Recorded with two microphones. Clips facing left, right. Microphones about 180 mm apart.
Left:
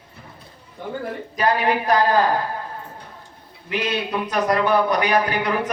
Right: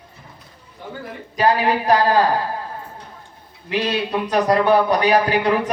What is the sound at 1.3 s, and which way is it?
Speech, 35° right (ahead or behind).